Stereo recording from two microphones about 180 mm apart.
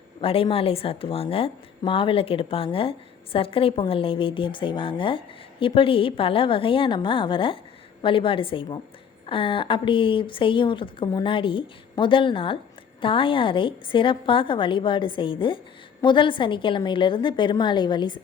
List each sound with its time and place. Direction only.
0.2 s a woman's voice: 30° left (ahead or behind)